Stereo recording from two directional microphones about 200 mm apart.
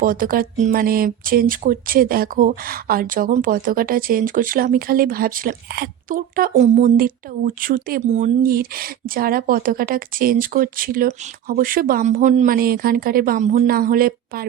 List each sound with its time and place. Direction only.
0.0 s speech: 45° right (ahead or behind)